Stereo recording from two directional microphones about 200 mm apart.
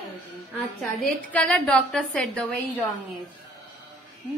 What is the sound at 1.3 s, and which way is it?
A woman's voice, 5° left (ahead or behind).